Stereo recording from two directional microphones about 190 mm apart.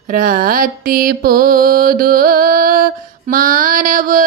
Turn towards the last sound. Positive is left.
turn(degrees=-45)  # may be behind; listen again after turning